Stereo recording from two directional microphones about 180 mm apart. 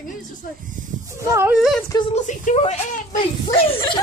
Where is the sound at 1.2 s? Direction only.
15° right (ahead or behind).